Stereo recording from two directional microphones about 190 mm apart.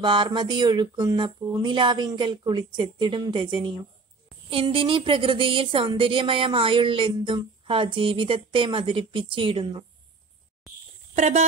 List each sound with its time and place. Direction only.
0.0 s a woman's voice: 25° right (ahead or behind)
11.1 s speech: 35° right (ahead or behind)